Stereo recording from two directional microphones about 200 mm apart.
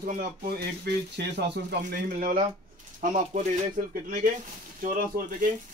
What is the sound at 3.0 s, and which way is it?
Speech, 40° right (ahead or behind).